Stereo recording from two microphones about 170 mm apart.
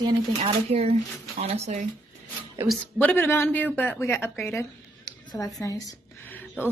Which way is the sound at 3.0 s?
10° left (ahead or behind).